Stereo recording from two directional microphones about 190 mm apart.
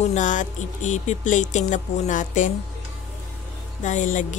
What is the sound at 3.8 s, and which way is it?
Speech, 40° left (ahead or behind).